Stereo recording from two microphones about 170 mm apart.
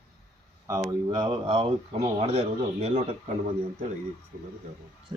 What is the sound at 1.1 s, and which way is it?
Speech, 30° right (ahead or behind).